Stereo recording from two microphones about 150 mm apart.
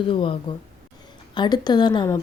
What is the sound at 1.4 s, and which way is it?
Speech, 30° left (ahead or behind).